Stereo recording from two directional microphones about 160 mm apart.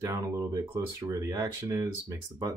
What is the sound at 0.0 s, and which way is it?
Speech, 15° right (ahead or behind).